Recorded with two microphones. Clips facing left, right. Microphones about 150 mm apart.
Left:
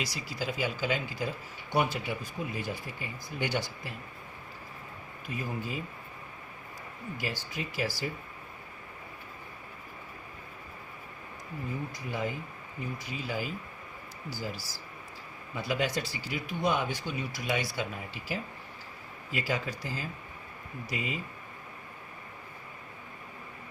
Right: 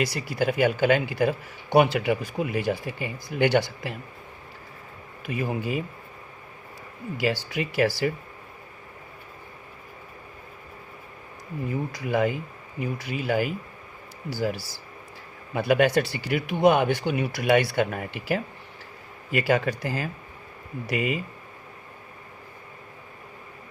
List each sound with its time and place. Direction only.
0.0 s speech: 60° right (ahead or behind)
5.2 s speech: 75° right (ahead or behind)
7.2 s speech: 75° right (ahead or behind)
11.9 s speech: 80° right